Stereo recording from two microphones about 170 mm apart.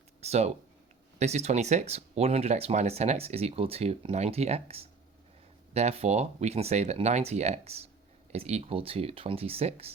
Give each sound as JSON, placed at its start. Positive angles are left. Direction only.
{"t": 0.2, "sound": "speech", "side_deg": -40}